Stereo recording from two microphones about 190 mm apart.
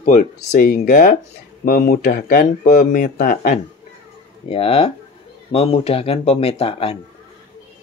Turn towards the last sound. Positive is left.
turn(degrees=30)  # may be behind; listen again after turning